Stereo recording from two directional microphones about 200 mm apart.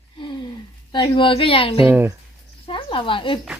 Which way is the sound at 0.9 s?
25° left (ahead or behind).